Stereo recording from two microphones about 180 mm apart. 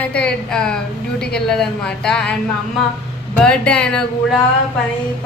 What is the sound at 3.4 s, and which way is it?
A woman's voice, 5° left (ahead or behind).